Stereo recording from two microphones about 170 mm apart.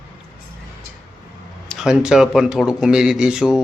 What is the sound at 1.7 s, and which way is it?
A man's voice, 5° right (ahead or behind).